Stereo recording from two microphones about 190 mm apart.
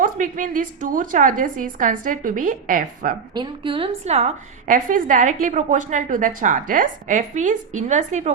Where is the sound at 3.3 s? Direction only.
25° right (ahead or behind).